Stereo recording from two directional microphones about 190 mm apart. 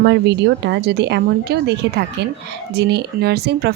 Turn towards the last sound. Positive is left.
turn(degrees=-60)  # may be behind; listen again after turning